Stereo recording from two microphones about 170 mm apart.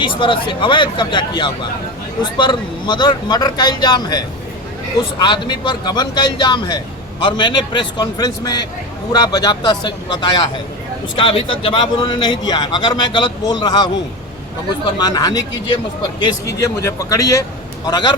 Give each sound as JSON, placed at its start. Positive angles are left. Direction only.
{"t": 0.0, "sound": "a man's voice", "side_deg": 30}
{"t": 5.2, "sound": "a man's voice", "side_deg": 25}
{"t": 14.9, "sound": "a man's voice", "side_deg": 20}